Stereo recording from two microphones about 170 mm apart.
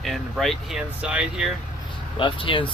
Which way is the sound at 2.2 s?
30° left (ahead or behind).